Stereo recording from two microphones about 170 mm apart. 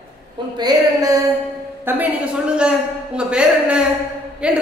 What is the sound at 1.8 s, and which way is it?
A woman's voice, 10° right (ahead or behind).